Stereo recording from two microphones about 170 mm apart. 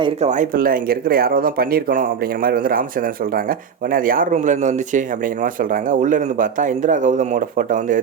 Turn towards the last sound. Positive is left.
turn(degrees=-50)  # may be behind; listen again after turning